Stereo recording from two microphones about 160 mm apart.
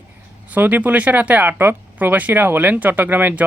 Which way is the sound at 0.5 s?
10° right (ahead or behind).